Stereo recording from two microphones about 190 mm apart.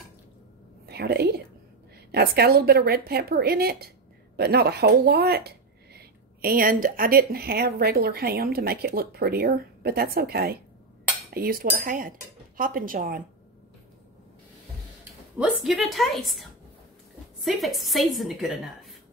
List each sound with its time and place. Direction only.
0.8 s a woman's voice: 55° right (ahead or behind)
15.3 s a woman's voice: 5° right (ahead or behind)